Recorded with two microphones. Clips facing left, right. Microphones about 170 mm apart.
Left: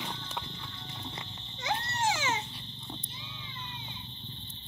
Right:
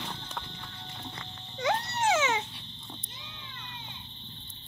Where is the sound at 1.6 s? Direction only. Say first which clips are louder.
Right 4 dB; 65° right (ahead or behind).